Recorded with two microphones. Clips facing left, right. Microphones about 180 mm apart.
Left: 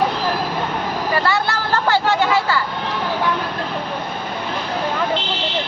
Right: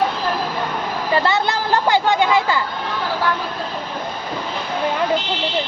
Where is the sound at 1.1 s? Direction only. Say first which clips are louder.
Right 3 dB; 20° right (ahead or behind).